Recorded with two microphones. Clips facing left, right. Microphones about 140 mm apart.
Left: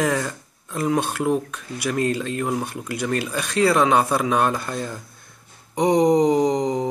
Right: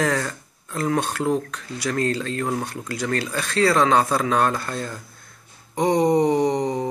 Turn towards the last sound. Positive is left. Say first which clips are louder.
# left 1 dB
turn(degrees=15)  # may be behind; listen again after turning